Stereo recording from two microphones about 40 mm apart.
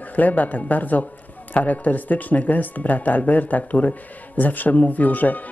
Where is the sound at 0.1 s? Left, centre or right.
Left.